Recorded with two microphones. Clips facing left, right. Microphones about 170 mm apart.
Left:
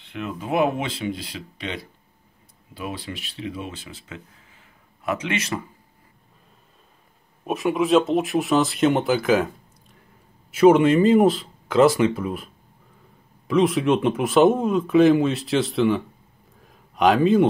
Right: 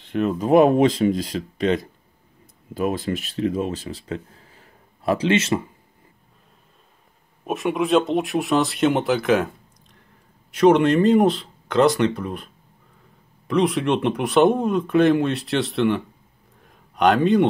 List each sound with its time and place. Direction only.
0.0 s speech: 40° right (ahead or behind)
7.4 s speech: centre (ahead or behind)
10.5 s speech: 5° left (ahead or behind)
13.5 s speech: centre (ahead or behind)
16.6 s a sound: centre (ahead or behind)